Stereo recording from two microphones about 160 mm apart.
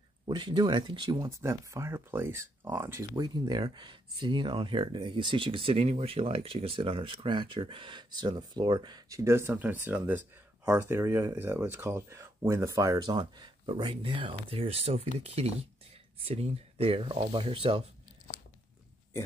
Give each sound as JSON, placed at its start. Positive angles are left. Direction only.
{"t": 0.3, "sound": "speech", "side_deg": -30}